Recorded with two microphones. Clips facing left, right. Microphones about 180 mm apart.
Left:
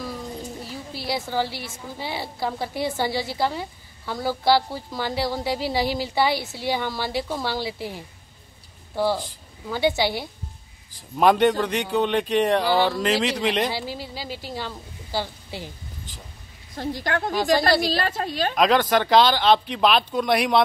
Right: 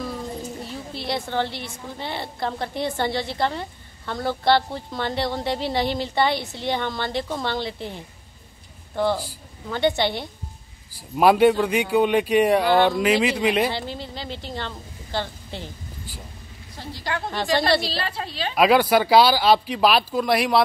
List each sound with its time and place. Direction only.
0.7 s a woman's voice: centre (ahead or behind)
11.1 s a man's voice: 5° right (ahead or behind)
12.6 s speech: 5° left (ahead or behind)
13.2 s a man's voice: 5° right (ahead or behind)
13.7 s speech: 5° left (ahead or behind)
16.7 s a woman's voice: 50° left (ahead or behind)
17.3 s a woman's voice: centre (ahead or behind)
17.8 s a woman's voice: 45° left (ahead or behind)
18.5 s a woman's voice: 5° right (ahead or behind)